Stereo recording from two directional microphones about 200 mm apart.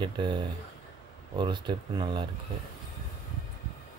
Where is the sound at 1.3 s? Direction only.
25° right (ahead or behind).